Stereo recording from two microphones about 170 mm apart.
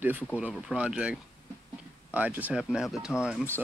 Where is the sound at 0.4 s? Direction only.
5° right (ahead or behind).